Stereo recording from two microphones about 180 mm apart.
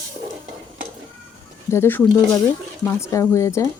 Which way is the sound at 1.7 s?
10° left (ahead or behind).